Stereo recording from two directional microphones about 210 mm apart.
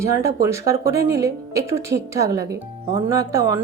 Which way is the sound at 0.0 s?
15° right (ahead or behind).